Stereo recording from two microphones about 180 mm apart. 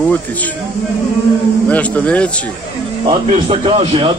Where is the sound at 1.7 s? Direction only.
10° left (ahead or behind).